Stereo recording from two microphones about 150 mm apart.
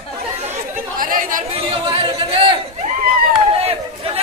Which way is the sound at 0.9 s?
65° right (ahead or behind).